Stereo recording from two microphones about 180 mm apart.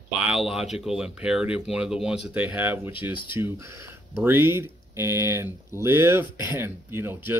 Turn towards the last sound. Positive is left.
turn(degrees=-10)  # may be behind; listen again after turning